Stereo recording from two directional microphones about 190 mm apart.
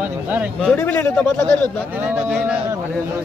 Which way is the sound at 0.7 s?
10° left (ahead or behind).